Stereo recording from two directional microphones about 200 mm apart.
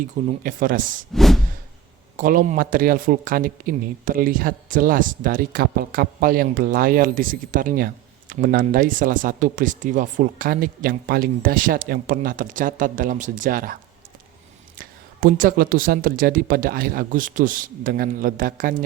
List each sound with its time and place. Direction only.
0.0 s a man's voice: 40° right (ahead or behind)
1.1 s a sound: centre (ahead or behind)
2.1 s a man's voice: 45° right (ahead or behind)
14.8 s a man's voice: 45° right (ahead or behind)